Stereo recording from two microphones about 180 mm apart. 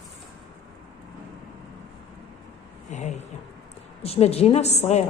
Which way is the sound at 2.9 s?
40° left (ahead or behind).